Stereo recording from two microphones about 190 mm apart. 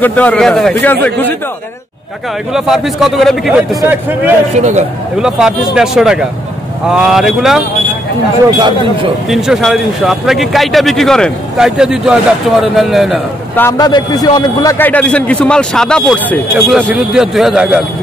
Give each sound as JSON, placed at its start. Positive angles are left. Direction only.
{"t": 0.0, "sound": "a man's voice", "side_deg": 10}
{"t": 2.5, "sound": "speech", "side_deg": 0}
{"t": 4.6, "sound": "a man's voice", "side_deg": -40}
{"t": 5.2, "sound": "speech", "side_deg": -5}
{"t": 8.5, "sound": "speech", "side_deg": -25}
{"t": 9.3, "sound": "speech", "side_deg": 0}
{"t": 13.6, "sound": "a man's voice", "side_deg": 15}